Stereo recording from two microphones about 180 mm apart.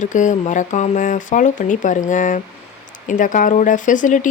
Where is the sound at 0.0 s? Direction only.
45° left (ahead or behind).